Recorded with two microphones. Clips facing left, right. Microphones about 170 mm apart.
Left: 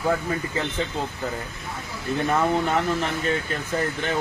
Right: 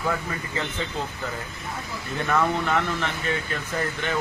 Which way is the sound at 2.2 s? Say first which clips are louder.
Left 1 dB; 30° left (ahead or behind).